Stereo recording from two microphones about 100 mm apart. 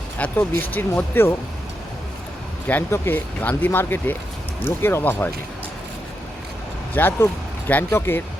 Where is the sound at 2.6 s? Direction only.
20° left (ahead or behind).